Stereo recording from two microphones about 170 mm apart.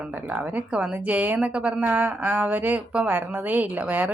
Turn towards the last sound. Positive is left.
turn(degrees=-10)  # may be behind; listen again after turning